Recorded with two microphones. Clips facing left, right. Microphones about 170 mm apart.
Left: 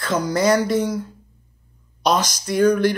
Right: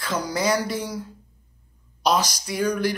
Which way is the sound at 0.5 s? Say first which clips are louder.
Left 7 dB; 50° left (ahead or behind).